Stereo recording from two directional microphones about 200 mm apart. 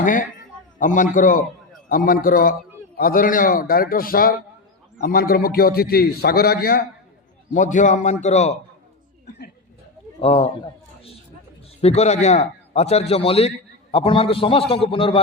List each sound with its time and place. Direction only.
0.0 s a man's voice: 40° left (ahead or behind)
10.2 s a man's voice: 30° left (ahead or behind)
11.8 s a man's voice: 30° left (ahead or behind)